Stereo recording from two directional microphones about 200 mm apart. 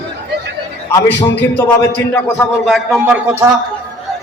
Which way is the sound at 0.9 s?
10° left (ahead or behind).